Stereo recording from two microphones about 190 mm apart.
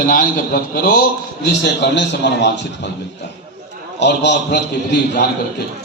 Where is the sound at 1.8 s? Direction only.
65° left (ahead or behind).